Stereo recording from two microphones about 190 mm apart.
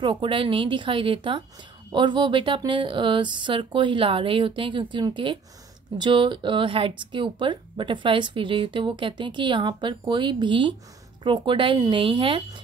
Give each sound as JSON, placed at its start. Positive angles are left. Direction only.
{"t": 0.0, "sound": "speech", "side_deg": -25}